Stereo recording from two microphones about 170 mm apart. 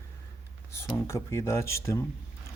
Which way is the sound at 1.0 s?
15° left (ahead or behind).